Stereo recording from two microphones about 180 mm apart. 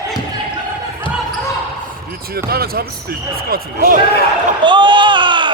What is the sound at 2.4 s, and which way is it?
A man's voice, 55° right (ahead or behind).